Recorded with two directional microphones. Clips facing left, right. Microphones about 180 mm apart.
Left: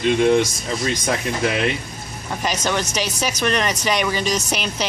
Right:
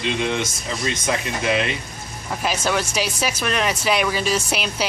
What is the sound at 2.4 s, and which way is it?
Speech, 5° right (ahead or behind).